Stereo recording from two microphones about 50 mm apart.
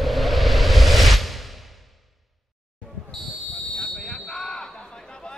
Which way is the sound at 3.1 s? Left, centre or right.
Centre.